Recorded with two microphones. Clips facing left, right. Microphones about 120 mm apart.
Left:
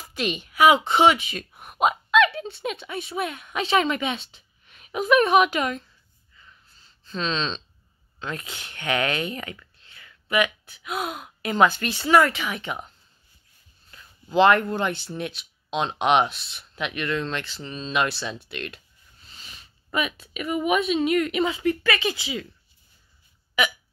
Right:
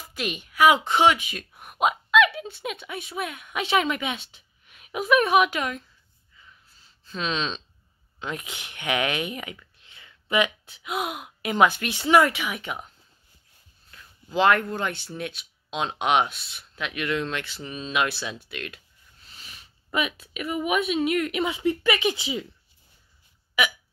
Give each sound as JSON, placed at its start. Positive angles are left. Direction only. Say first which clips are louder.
{"t": 0.1, "sound": "a woman's voice", "louder": "left 4 dB", "side_deg": 0}
{"t": 7.1, "sound": "speech", "louder": "left 1 dB", "side_deg": -10}
{"t": 21.5, "sound": "speech", "louder": "even", "side_deg": -15}